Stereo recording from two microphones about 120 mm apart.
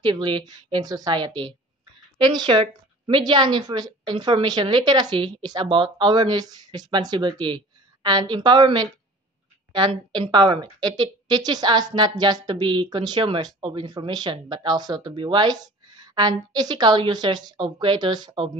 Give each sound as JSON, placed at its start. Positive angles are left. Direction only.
{"t": 0.0, "sound": "a woman's voice", "side_deg": -40}